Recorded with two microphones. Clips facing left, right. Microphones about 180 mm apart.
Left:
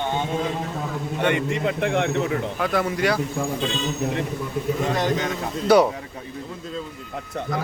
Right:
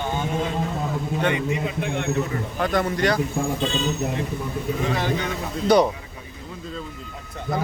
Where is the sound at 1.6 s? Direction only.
75° left (ahead or behind).